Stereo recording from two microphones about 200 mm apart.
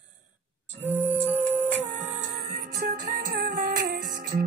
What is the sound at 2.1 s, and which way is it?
Music, 40° right (ahead or behind).